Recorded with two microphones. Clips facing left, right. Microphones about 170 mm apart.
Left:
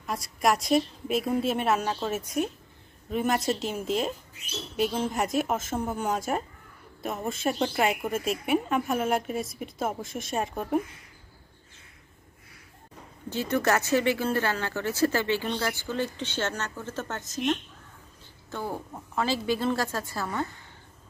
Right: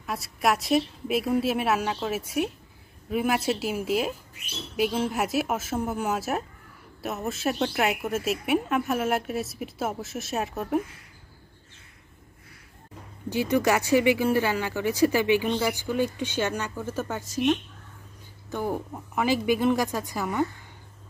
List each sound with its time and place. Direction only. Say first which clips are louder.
0.0 s a woman's voice: even; 5° right (ahead or behind)
13.3 s speech: right 2 dB; 15° right (ahead or behind)